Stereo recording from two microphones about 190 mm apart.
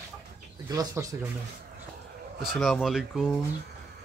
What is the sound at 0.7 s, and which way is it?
Speech, 15° right (ahead or behind).